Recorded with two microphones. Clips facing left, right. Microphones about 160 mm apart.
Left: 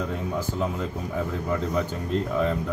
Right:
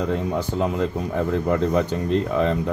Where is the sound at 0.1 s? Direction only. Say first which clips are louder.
Right 5 dB; 75° right (ahead or behind).